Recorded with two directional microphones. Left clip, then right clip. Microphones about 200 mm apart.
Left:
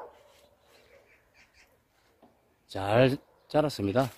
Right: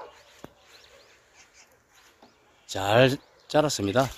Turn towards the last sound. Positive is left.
turn(degrees=0)  # may be behind; listen again after turning